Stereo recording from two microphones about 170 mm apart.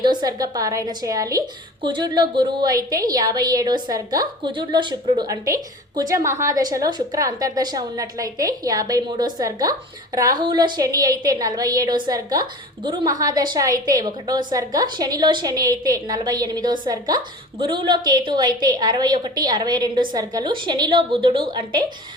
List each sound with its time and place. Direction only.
0.0 s a woman's voice: 25° right (ahead or behind)